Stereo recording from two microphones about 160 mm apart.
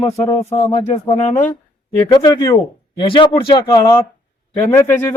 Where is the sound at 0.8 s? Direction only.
45° left (ahead or behind).